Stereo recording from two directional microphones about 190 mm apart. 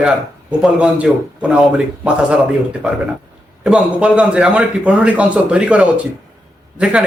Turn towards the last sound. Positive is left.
turn(degrees=-5)  # may be behind; listen again after turning